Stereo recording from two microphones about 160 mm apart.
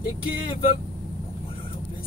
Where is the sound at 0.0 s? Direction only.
35° left (ahead or behind).